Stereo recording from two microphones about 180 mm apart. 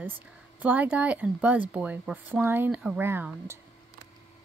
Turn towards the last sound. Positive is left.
turn(degrees=-10)  # may be behind; listen again after turning